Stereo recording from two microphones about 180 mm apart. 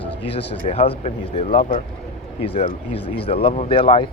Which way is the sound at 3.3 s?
30° left (ahead or behind).